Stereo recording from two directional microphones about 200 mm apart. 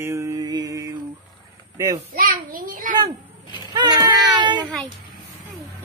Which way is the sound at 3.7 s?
20° right (ahead or behind).